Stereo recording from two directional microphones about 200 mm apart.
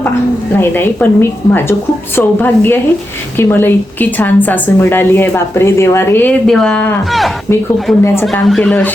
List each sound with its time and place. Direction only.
0.6 s a woman's voice: 10° left (ahead or behind)